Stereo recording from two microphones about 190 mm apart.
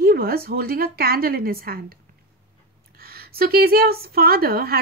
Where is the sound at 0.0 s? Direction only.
50° right (ahead or behind).